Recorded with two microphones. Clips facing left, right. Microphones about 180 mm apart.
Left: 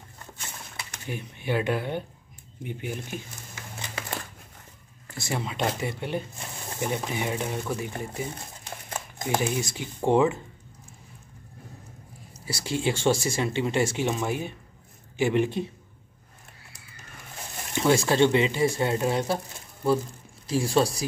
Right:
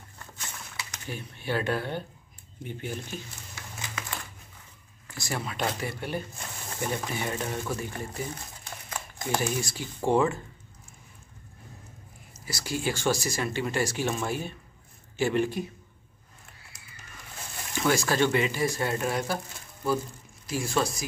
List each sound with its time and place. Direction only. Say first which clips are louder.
1.0 s speech: left 3 dB; 15° left (ahead or behind)
5.1 s speech: left 2 dB; 20° left (ahead or behind)
12.4 s speech: left 3 dB; 25° left (ahead or behind)
17.7 s speech: left 4 dB; 25° left (ahead or behind)